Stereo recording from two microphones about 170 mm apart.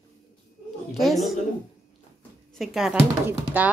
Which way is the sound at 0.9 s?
Centre (ahead or behind).